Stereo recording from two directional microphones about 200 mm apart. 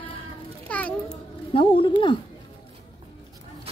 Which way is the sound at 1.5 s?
25° left (ahead or behind).